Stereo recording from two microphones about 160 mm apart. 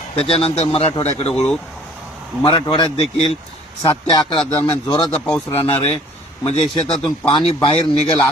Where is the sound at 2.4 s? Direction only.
30° left (ahead or behind).